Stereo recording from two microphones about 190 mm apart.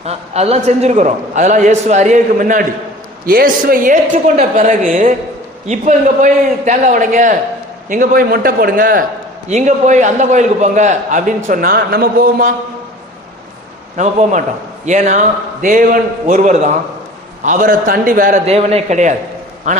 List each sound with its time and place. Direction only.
0.0 s a man's voice: 35° right (ahead or behind)
13.9 s a man's voice: 40° right (ahead or behind)